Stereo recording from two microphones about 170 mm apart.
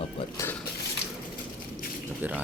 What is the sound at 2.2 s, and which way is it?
Speech, 10° right (ahead or behind).